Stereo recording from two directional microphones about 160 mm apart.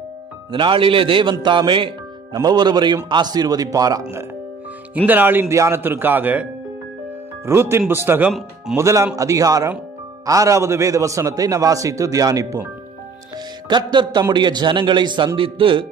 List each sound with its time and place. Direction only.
0.5 s a man's voice: 30° right (ahead or behind)
4.9 s speech: 10° right (ahead or behind)
7.4 s speech: 15° right (ahead or behind)
8.3 s speech: centre (ahead or behind)
8.7 s a man's voice: 20° right (ahead or behind)
13.7 s a man's voice: 30° right (ahead or behind)